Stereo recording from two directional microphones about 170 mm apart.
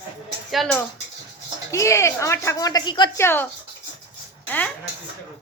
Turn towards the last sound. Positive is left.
turn(degrees=10)  # may be behind; listen again after turning